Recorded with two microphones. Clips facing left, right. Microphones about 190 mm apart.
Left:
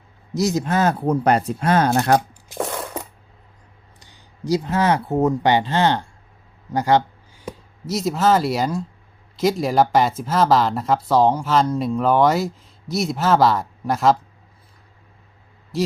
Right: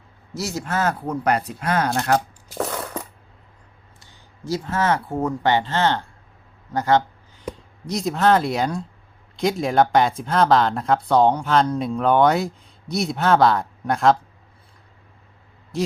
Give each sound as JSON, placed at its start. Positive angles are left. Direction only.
{"t": 0.3, "sound": "speech", "side_deg": 20}
{"t": 2.1, "sound": "a sound", "side_deg": 10}
{"t": 4.0, "sound": "speech", "side_deg": 15}
{"t": 15.7, "sound": "a man's voice", "side_deg": 0}